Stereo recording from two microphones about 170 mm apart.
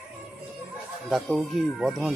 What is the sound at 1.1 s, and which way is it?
A man's voice, centre (ahead or behind).